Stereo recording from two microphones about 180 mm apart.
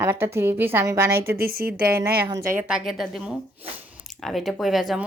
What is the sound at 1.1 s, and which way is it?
Speech, 60° right (ahead or behind).